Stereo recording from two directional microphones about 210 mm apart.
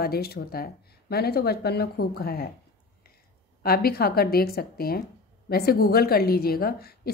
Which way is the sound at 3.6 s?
45° left (ahead or behind).